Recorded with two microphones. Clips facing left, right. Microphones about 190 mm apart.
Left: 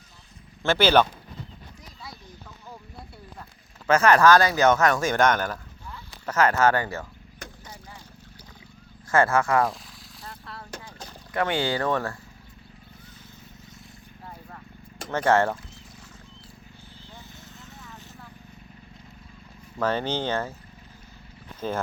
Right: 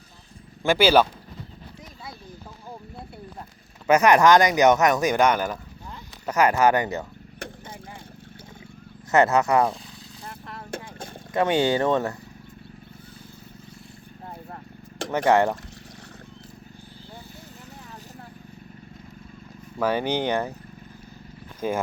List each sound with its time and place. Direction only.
0.6 s speech: 10° right (ahead or behind)
3.8 s speech: 15° right (ahead or behind)
9.1 s speech: 20° right (ahead or behind)
10.7 s boat: 50° right (ahead or behind)
11.3 s speech: 20° right (ahead or behind)
15.1 s speech: 15° right (ahead or behind)
19.8 s speech: 10° right (ahead or behind)